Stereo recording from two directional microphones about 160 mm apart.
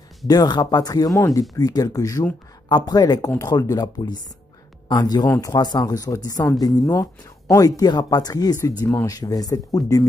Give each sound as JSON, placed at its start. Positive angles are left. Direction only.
{"t": 0.3, "sound": "speech", "side_deg": 25}